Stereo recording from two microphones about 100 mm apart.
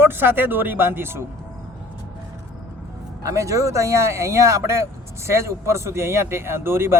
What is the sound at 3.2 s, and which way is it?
A man's voice, 30° right (ahead or behind).